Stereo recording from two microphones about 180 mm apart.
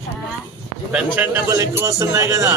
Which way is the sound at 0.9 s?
10° right (ahead or behind).